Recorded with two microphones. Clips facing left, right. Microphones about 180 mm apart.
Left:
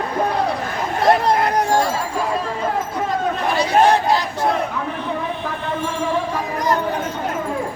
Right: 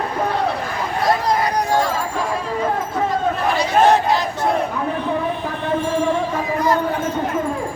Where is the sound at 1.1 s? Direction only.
55° left (ahead or behind).